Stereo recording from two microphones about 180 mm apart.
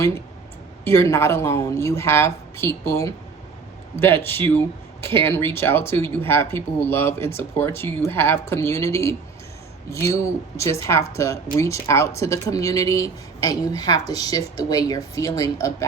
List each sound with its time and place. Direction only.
0.9 s speech: 15° left (ahead or behind)